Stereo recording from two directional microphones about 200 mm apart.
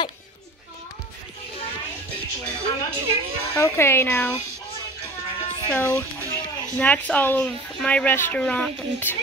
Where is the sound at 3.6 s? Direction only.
10° left (ahead or behind).